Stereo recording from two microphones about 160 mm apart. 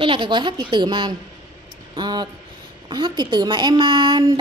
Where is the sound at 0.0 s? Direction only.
30° right (ahead or behind).